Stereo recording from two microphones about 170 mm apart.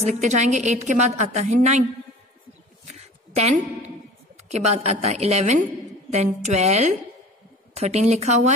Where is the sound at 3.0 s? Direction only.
40° right (ahead or behind).